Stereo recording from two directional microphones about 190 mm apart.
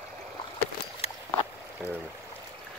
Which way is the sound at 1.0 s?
30° left (ahead or behind).